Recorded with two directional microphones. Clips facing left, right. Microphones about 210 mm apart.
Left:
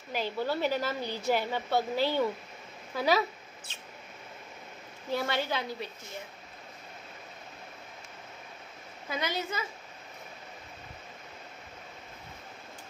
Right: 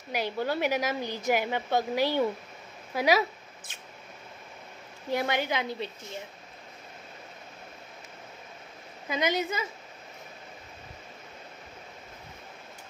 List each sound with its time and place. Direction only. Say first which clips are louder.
0.1 s speech: right 2 dB; 15° right (ahead or behind)
5.1 s speech: right 2 dB; 15° right (ahead or behind)
9.1 s a woman's voice: right 5 dB; 20° right (ahead or behind)